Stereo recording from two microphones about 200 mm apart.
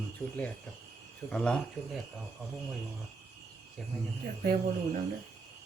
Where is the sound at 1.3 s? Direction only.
5° left (ahead or behind).